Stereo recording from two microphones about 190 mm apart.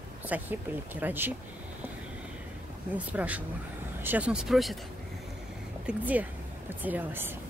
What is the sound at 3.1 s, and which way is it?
Speech, 10° right (ahead or behind).